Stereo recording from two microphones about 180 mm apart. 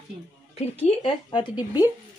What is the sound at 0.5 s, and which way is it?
Speech, 35° left (ahead or behind).